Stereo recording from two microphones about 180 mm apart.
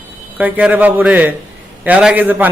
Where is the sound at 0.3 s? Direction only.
10° right (ahead or behind).